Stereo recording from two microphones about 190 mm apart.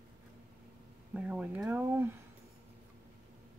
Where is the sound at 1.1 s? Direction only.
5° right (ahead or behind).